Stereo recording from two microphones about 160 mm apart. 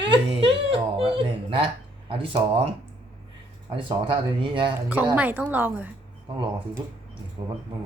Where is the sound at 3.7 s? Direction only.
30° right (ahead or behind).